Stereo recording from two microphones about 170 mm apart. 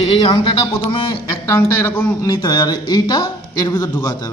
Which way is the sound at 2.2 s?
25° left (ahead or behind).